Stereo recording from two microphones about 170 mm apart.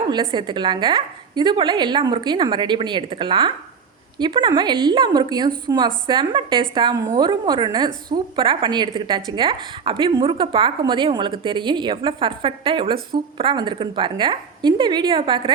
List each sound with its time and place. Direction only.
0.1 s a woman's voice: 25° right (ahead or behind)